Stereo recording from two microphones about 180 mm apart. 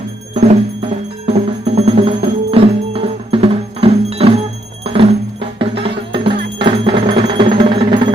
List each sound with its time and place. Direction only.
0.3 s music: 35° right (ahead or behind)